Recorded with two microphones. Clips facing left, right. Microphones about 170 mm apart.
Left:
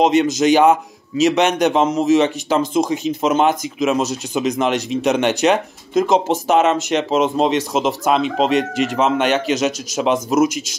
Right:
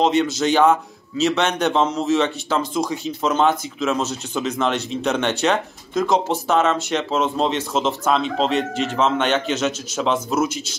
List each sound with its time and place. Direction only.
0.4 s a man's voice: 15° left (ahead or behind)